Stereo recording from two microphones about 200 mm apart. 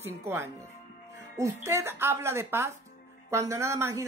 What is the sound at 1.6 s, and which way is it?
Speech, 10° right (ahead or behind).